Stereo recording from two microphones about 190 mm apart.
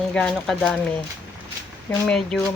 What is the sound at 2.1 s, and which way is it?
Speech, 5° left (ahead or behind).